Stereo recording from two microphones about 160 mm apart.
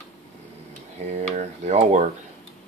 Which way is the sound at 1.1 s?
45° right (ahead or behind).